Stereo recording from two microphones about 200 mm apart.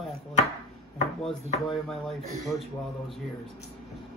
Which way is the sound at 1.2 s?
Centre (ahead or behind).